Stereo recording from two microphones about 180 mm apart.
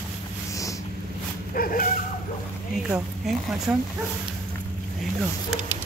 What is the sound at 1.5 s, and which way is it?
Dog, 50° left (ahead or behind).